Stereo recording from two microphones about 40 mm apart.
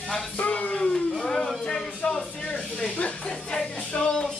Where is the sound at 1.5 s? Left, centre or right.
Centre.